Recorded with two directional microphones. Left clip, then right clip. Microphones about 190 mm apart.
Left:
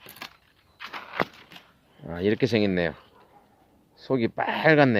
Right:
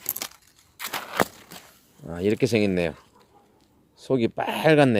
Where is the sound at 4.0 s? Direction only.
15° right (ahead or behind).